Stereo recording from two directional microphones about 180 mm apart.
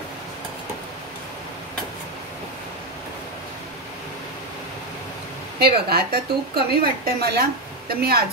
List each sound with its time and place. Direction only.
5.6 s a woman's voice: 60° right (ahead or behind)